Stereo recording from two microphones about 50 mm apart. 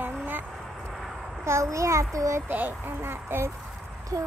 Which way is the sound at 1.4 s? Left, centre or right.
Right.